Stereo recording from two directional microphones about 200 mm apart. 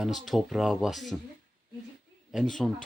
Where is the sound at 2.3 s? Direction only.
Centre (ahead or behind).